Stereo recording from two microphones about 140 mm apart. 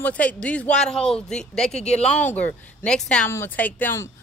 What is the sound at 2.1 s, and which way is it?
Speech, 10° left (ahead or behind).